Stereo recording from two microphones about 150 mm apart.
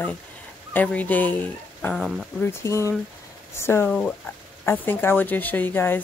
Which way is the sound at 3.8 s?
5° left (ahead or behind).